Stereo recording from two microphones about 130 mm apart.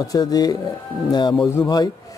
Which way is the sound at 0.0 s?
30° left (ahead or behind).